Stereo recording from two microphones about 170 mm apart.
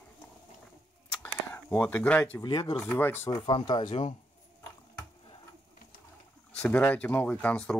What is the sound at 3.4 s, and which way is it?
Speech, 25° left (ahead or behind).